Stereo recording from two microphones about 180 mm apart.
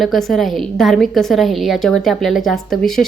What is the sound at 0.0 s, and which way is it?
A woman's voice, centre (ahead or behind).